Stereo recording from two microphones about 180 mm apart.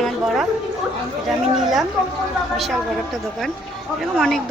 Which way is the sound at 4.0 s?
Centre (ahead or behind).